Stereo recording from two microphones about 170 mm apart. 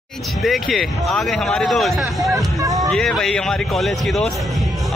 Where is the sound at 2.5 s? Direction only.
20° right (ahead or behind).